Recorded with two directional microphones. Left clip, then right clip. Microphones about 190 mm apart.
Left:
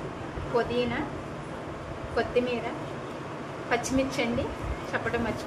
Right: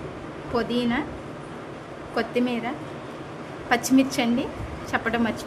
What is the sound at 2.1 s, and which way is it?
Speech, 55° right (ahead or behind).